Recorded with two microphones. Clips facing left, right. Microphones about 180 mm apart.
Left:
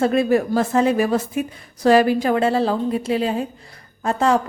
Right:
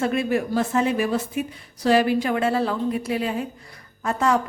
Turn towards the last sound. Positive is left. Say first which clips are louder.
# left 3 dB
turn(degrees=30)  # may be behind; listen again after turning